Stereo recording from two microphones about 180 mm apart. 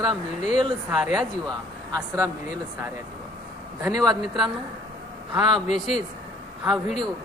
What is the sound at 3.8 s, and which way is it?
Speech, 20° right (ahead or behind).